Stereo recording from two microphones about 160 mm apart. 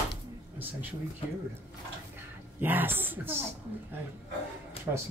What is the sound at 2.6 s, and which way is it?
Speech, 10° right (ahead or behind).